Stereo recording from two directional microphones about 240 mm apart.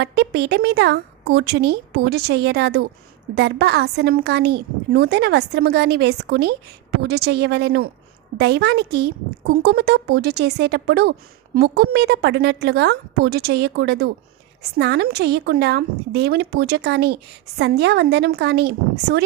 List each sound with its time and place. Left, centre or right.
0.0 s a woman's voice: right